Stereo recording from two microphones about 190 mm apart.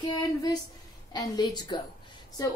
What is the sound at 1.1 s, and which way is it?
Speech, 20° left (ahead or behind).